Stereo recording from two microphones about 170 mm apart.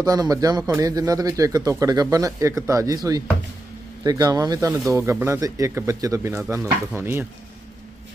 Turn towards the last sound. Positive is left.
turn(degrees=-15)  # may be behind; listen again after turning